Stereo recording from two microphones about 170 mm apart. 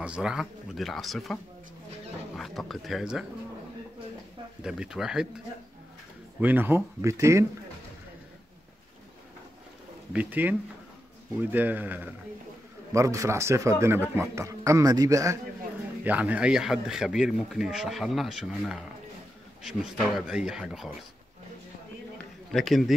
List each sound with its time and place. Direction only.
0.0 s speech: 5° right (ahead or behind)
4.6 s speech: 5° right (ahead or behind)
6.4 s a man's voice: 10° right (ahead or behind)
10.1 s a man's voice: 10° right (ahead or behind)
11.5 s a man's voice: 10° right (ahead or behind)
20.2 s speech: 5° right (ahead or behind)
22.5 s speech: centre (ahead or behind)